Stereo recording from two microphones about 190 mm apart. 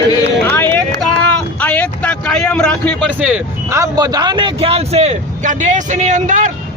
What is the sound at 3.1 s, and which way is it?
Speech, 5° right (ahead or behind).